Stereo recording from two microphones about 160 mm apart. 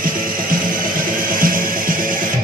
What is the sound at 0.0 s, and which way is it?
Music, 60° right (ahead or behind).